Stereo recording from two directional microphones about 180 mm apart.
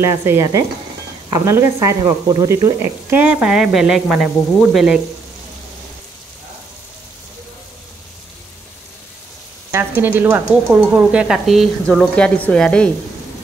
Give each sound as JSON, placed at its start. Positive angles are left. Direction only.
{"t": 0.0, "sound": "speech", "side_deg": -15}
{"t": 9.7, "sound": "speech", "side_deg": -10}